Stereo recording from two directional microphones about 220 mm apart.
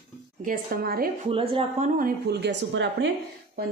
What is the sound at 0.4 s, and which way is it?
Speech, 40° right (ahead or behind).